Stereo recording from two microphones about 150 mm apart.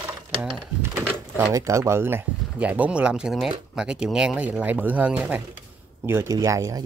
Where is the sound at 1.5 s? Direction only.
20° right (ahead or behind).